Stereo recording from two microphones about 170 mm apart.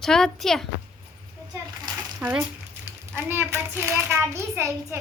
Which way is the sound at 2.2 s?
10° right (ahead or behind).